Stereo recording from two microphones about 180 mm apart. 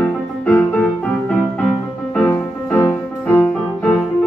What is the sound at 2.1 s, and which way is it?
Music, 10° left (ahead or behind).